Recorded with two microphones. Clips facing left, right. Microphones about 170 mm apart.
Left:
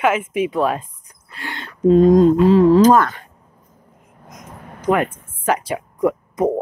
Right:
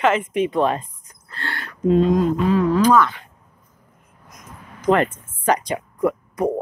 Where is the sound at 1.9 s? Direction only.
40° left (ahead or behind).